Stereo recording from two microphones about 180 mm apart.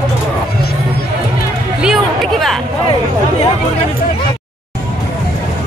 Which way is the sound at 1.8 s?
Centre (ahead or behind).